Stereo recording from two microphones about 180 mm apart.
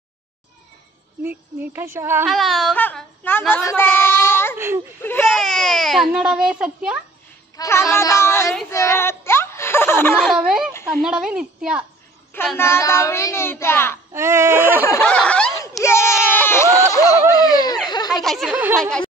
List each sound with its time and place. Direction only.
1.2 s speech: 10° right (ahead or behind)
2.2 s speech: centre (ahead or behind)
4.6 s speech: 15° right (ahead or behind)
5.0 s speech: 10° left (ahead or behind); by 7.0 s 5° right (ahead or behind)
7.5 s child singing: 15° left (ahead or behind)
8.6 s a sound: 15° left (ahead or behind)
10.2 s speech: 5° right (ahead or behind)
12.5 s child singing: 15° left (ahead or behind)
14.1 s speech: 15° right (ahead or behind)
15.0 s snicker: 5° left (ahead or behind)
15.8 s a sound: 15° left (ahead or behind)
18.1 s a sound: centre (ahead or behind)
18.8 s speech: 5° left (ahead or behind)